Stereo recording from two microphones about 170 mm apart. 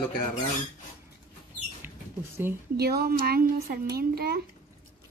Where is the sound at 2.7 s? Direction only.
65° right (ahead or behind).